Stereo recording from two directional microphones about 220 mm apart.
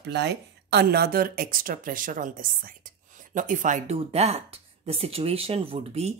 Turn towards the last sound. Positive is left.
turn(degrees=-30)  # may be behind; listen again after turning